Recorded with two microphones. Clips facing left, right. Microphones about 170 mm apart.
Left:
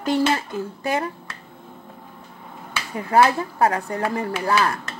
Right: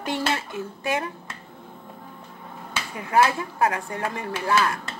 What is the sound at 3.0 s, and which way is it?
Speech, 35° left (ahead or behind).